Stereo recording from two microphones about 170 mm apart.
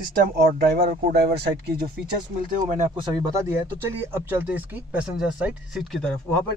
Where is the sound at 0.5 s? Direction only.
60° right (ahead or behind).